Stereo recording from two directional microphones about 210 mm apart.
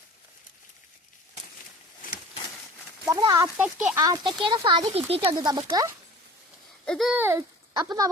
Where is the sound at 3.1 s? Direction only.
15° right (ahead or behind).